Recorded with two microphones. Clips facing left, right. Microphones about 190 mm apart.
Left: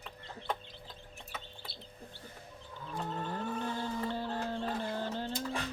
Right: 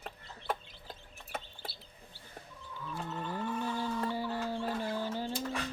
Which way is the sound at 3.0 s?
45° left (ahead or behind).